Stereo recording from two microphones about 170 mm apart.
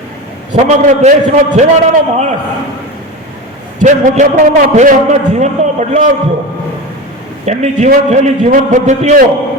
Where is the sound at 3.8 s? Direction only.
50° right (ahead or behind).